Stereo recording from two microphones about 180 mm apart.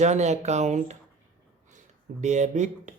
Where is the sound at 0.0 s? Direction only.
40° right (ahead or behind).